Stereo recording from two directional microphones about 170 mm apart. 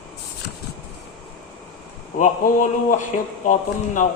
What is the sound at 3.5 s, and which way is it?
Speech, 45° left (ahead or behind).